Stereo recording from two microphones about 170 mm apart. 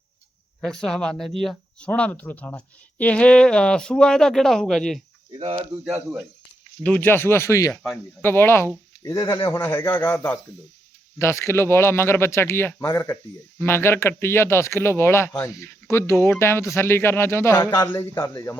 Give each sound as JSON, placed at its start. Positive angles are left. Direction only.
{"t": 0.6, "sound": "speech", "side_deg": 0}
{"t": 5.4, "sound": "speech", "side_deg": -35}
{"t": 6.8, "sound": "speech", "side_deg": 10}
{"t": 7.7, "sound": "speech", "side_deg": 0}
{"t": 8.2, "sound": "speech", "side_deg": 10}